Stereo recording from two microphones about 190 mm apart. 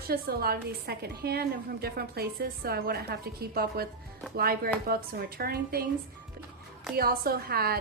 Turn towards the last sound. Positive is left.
turn(degrees=-55)  # may be behind; listen again after turning